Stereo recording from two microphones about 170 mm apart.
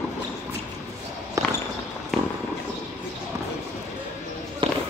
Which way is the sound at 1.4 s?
20° right (ahead or behind).